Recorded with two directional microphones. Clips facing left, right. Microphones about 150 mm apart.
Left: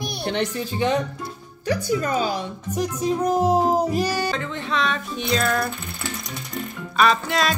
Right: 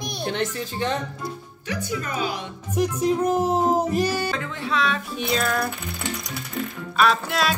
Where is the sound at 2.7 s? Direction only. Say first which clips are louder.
Right 2 dB; 5° right (ahead or behind).